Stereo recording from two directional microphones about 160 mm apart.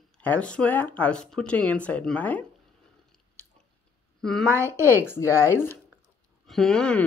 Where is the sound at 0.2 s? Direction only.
10° left (ahead or behind).